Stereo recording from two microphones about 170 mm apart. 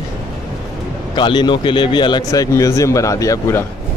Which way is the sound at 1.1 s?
30° left (ahead or behind).